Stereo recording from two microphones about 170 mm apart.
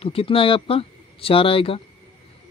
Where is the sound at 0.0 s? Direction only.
35° left (ahead or behind).